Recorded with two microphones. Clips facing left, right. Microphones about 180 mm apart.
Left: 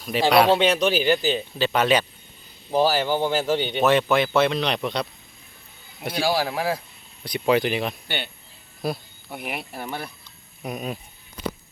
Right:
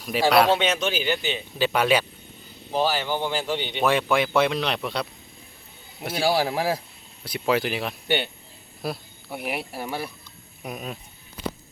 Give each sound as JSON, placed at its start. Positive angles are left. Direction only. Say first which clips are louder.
{"t": 0.0, "sound": "speech", "louder": "left 1 dB", "side_deg": -5}
{"t": 0.5, "sound": "speech", "louder": "left 4 dB", "side_deg": 35}
{"t": 1.5, "sound": "speech", "louder": "right 1 dB", "side_deg": -10}
{"t": 2.7, "sound": "speech", "louder": "left 4 dB", "side_deg": 40}
{"t": 3.8, "sound": "speech", "louder": "left 2 dB", "side_deg": -10}